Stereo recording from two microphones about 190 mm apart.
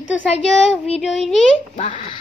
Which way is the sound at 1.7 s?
25° left (ahead or behind).